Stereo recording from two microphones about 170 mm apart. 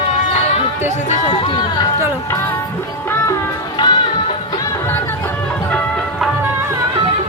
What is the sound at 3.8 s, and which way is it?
Music, 25° left (ahead or behind).